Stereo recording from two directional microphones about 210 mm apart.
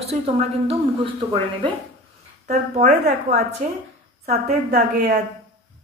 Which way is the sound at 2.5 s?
35° right (ahead or behind).